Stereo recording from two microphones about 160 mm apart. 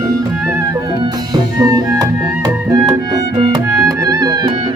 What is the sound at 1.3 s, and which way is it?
Music, 20° right (ahead or behind).